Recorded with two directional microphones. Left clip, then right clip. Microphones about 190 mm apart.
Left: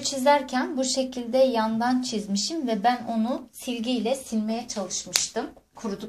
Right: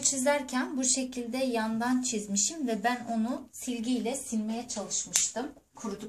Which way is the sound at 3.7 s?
35° left (ahead or behind).